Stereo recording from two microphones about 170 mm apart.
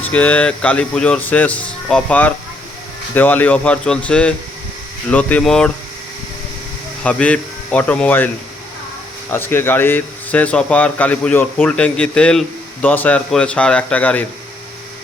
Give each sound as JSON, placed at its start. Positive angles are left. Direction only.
{"t": 0.0, "sound": "speech", "side_deg": 10}
{"t": 7.0, "sound": "speech", "side_deg": 5}
{"t": 9.3, "sound": "speech", "side_deg": 15}